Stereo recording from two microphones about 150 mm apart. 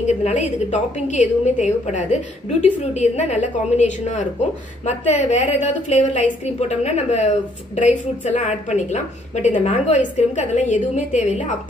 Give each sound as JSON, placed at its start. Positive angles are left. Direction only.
{"t": 0.0, "sound": "a woman's voice", "side_deg": 50}